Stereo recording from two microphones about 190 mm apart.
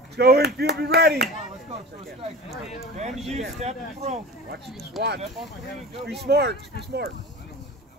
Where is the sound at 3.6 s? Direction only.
35° right (ahead or behind).